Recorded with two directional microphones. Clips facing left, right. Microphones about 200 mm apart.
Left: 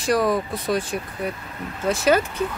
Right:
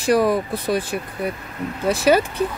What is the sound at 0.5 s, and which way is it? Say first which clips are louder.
Speech: right 2 dB; 35° right (ahead or behind).